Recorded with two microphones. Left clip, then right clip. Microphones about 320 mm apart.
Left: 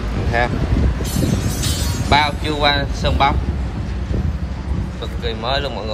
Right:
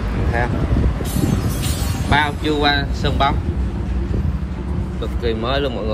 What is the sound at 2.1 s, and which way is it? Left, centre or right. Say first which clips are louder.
Speech: left 1 dB; centre.